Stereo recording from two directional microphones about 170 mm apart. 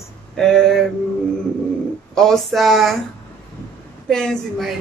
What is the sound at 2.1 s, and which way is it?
Speech, centre (ahead or behind).